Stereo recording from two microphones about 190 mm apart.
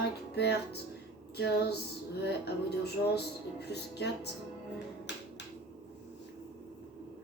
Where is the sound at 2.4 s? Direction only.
60° left (ahead or behind).